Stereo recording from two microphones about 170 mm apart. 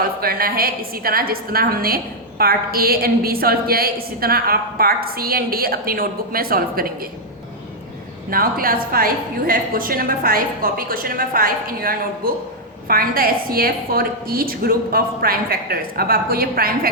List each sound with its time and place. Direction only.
0.2 s a woman's voice: 60° right (ahead or behind)
8.3 s a woman's voice: 60° right (ahead or behind)